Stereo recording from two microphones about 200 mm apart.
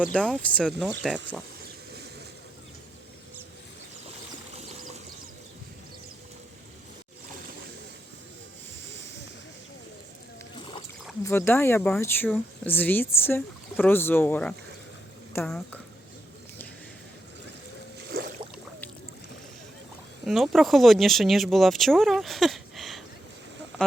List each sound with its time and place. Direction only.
0.0 s speech: centre (ahead or behind)
11.2 s speech: 10° left (ahead or behind)
18.1 s boat: 50° right (ahead or behind)
20.2 s speech: centre (ahead or behind)